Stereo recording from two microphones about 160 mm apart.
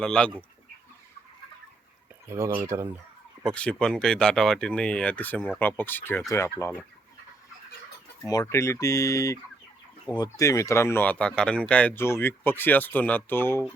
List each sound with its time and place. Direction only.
0.0 s speech: 5° left (ahead or behind)
2.2 s speech: 15° right (ahead or behind)
3.4 s speech: 5° left (ahead or behind)
8.3 s speech: 20° left (ahead or behind)